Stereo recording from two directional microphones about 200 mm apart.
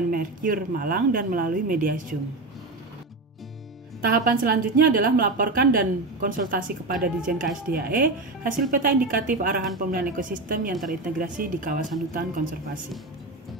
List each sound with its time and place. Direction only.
0.1 s a woman's voice: 45° right (ahead or behind)
4.0 s a woman's voice: 45° right (ahead or behind)